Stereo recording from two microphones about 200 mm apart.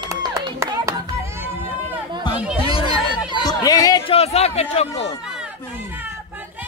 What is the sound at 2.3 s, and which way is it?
Chatter, 5° right (ahead or behind).